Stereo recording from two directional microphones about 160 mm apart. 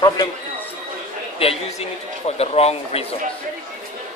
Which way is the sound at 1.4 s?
40° left (ahead or behind).